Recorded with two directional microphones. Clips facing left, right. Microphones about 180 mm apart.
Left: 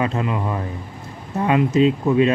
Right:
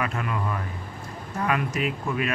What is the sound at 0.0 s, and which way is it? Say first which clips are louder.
Speech: left 6 dB; 25° left (ahead or behind).